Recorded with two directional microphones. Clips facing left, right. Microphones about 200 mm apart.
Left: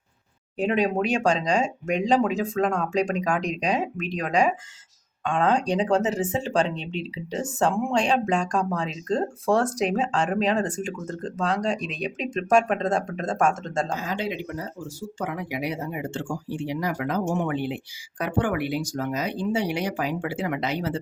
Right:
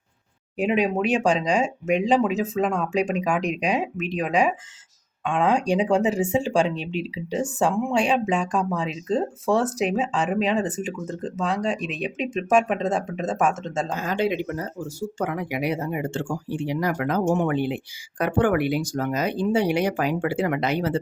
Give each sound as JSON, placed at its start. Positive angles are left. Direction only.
{"t": 0.6, "sound": "speech", "side_deg": -5}
{"t": 13.9, "sound": "speech", "side_deg": -55}
{"t": 18.2, "sound": "speech", "side_deg": -55}